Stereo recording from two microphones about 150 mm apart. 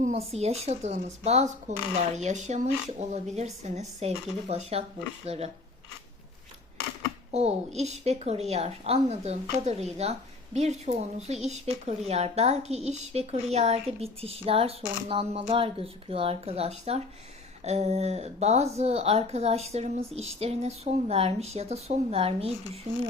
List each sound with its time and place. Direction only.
0.0 s a woman's voice: 45° right (ahead or behind)
7.3 s a woman's voice: 45° right (ahead or behind)